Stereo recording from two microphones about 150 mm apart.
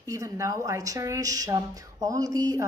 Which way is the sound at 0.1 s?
20° right (ahead or behind).